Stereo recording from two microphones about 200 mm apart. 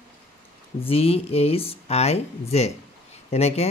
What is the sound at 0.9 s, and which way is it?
Speech, 30° left (ahead or behind).